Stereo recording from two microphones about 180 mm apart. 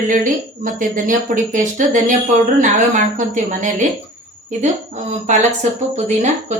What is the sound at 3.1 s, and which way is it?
Speech, 45° right (ahead or behind).